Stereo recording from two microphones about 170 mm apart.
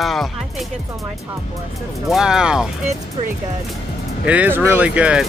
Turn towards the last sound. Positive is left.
turn(degrees=-5)  # may be behind; listen again after turning